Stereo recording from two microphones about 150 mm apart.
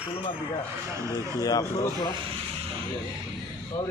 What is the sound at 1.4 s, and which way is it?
Speech, 25° left (ahead or behind).